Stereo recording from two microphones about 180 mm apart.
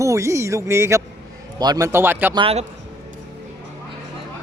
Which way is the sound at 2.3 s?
30° right (ahead or behind).